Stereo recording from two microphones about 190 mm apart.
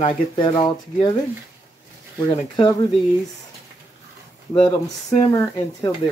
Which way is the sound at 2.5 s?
25° left (ahead or behind).